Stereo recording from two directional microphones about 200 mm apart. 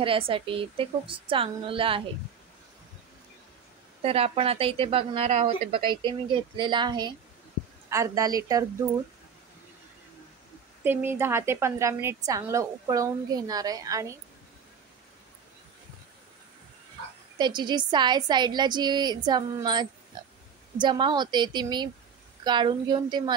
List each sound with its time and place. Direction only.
0.0 s speech: 25° right (ahead or behind)
4.0 s a woman's voice: 30° right (ahead or behind)
10.8 s a woman's voice: 10° right (ahead or behind)
17.4 s speech: 20° right (ahead or behind)